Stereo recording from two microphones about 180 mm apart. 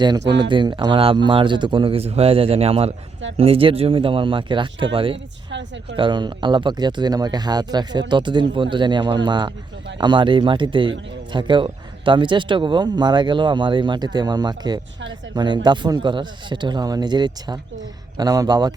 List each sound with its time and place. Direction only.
0.3 s speech: 25° right (ahead or behind)
5.5 s a woman's voice: 80° right
6.0 s speech: 25° right (ahead or behind)